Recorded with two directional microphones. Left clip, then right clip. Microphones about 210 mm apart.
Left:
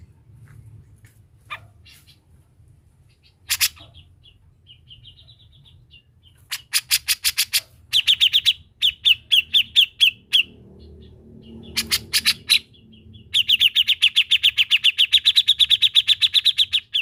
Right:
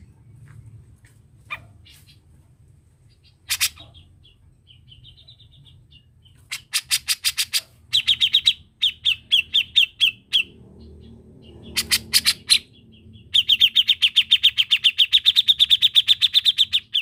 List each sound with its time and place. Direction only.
3.4 s bird: 10° left (ahead or behind)
6.5 s bird: 15° left (ahead or behind)
11.9 s bird: 5° right (ahead or behind)